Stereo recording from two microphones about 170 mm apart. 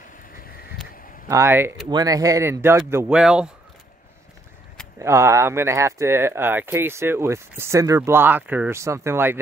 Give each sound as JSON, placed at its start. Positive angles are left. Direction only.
{"t": 1.3, "sound": "speech", "side_deg": -15}
{"t": 4.9, "sound": "speech", "side_deg": -15}